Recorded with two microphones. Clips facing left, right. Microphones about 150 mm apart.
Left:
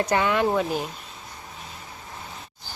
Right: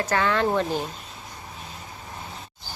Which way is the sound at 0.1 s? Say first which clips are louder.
Right 1 dB; 15° left (ahead or behind).